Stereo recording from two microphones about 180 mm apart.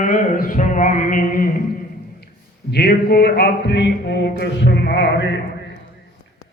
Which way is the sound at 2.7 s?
60° left (ahead or behind).